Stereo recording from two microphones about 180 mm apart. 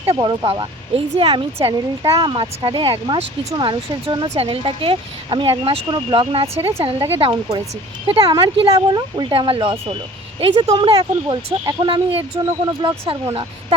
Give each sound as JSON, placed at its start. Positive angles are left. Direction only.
{"t": 0.1, "sound": "speech", "side_deg": -25}